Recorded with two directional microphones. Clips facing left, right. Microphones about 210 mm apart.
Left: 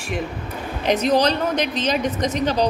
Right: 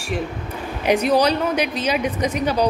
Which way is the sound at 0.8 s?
10° right (ahead or behind).